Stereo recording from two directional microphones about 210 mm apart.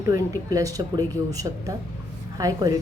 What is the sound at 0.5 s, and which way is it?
Speech, 15° right (ahead or behind).